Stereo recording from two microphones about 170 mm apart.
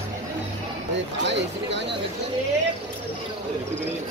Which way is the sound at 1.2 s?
90° right.